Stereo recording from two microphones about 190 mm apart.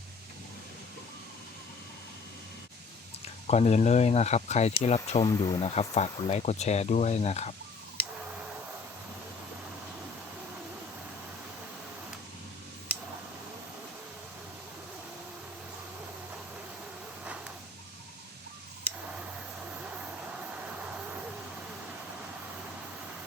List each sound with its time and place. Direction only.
3.4 s speech: 35° left (ahead or behind)
5.3 s speech: 20° left (ahead or behind)
19.7 s vehicle: 5° right (ahead or behind)